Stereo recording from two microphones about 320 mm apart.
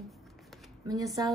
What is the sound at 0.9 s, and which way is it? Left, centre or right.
Speech, centre.